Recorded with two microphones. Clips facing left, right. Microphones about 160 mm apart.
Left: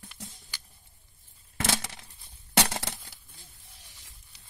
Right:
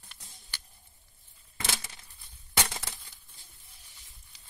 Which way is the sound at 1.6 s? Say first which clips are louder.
Left 7 dB; 80° left.